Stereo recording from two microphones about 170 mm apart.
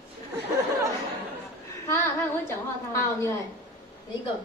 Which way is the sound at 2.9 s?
15° left (ahead or behind).